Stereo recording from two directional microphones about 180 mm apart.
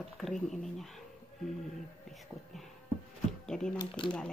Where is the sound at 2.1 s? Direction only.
Centre (ahead or behind).